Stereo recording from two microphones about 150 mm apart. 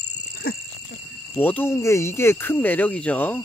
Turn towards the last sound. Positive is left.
turn(degrees=10)  # may be behind; listen again after turning